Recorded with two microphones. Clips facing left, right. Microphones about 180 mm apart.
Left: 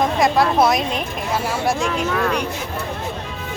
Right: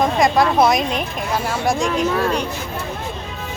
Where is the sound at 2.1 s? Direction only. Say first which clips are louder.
Right 1 dB; 30° right (ahead or behind).